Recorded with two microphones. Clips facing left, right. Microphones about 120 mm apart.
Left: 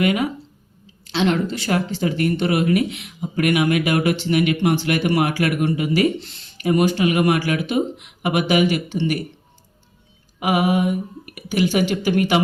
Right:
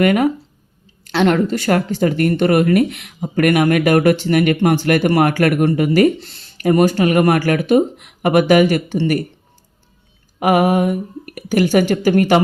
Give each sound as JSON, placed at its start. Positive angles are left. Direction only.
{"t": 0.0, "sound": "speech", "side_deg": -50}
{"t": 10.4, "sound": "speech", "side_deg": -45}